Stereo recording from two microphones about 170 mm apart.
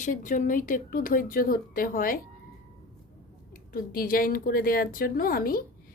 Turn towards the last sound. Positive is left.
turn(degrees=60)  # may be behind; listen again after turning